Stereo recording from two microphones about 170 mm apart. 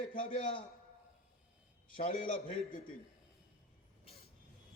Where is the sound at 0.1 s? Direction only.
55° left (ahead or behind).